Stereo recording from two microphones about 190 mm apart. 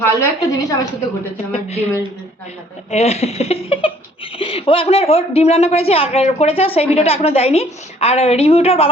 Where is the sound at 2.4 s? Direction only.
35° left (ahead or behind).